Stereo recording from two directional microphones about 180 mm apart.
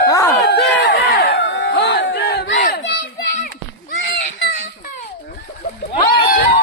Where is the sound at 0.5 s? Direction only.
80° left; by 2.8 s 55° left (ahead or behind).